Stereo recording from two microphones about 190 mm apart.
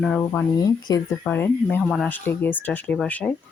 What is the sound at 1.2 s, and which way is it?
Speech, 10° left (ahead or behind).